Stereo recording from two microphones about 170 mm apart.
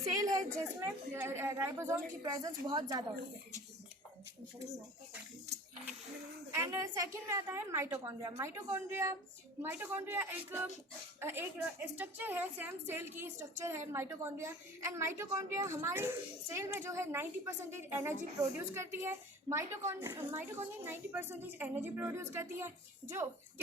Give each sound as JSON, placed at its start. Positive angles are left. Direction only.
{"t": 0.2, "sound": "a woman's voice", "side_deg": -20}
{"t": 6.5, "sound": "a woman's voice", "side_deg": -15}